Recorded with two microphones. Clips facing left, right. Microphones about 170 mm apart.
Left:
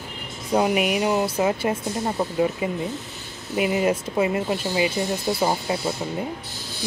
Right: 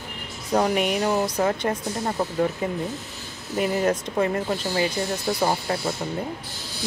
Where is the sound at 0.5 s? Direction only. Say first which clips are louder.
Left 1 dB; 10° left (ahead or behind).